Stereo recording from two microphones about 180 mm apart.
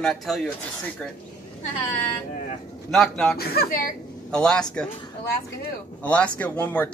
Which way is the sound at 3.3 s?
60° left (ahead or behind).